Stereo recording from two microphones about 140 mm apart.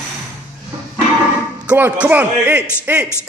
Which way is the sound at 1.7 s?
10° right (ahead or behind).